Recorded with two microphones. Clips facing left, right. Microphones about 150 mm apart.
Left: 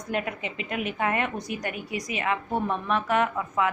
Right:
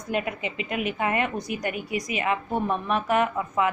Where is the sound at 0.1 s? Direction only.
5° right (ahead or behind).